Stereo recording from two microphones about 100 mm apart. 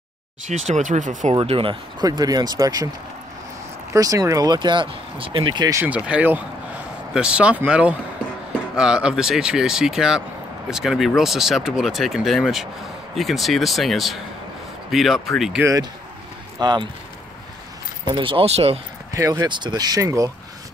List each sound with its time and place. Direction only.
0.9 s speech: 90° right
1.3 s speech: 65° right (ahead or behind)
2.0 s speech: 40° right (ahead or behind)
3.9 s speech: 35° right (ahead or behind)
4.6 s speech: 50° right (ahead or behind)
5.9 s speech: 10° right (ahead or behind)
16.5 s speech: 45° right (ahead or behind)
18.0 s speech: 55° right (ahead or behind); by 18.8 s 75° right (ahead or behind)
19.1 s speech: 30° right (ahead or behind)
19.4 s speech: 45° right (ahead or behind)
20.0 s speech: 30° right (ahead or behind)